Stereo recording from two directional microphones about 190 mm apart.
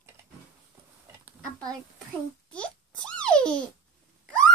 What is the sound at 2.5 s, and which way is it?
Babbling, 5° left (ahead or behind).